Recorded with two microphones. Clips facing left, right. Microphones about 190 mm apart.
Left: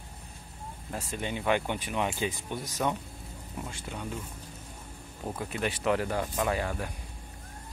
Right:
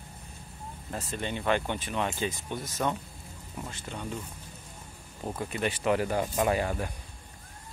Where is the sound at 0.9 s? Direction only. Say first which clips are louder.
Even; 10° left (ahead or behind).